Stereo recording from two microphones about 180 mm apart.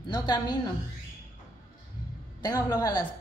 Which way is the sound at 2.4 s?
20° left (ahead or behind).